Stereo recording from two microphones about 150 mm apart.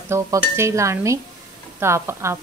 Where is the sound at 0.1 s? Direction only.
20° right (ahead or behind).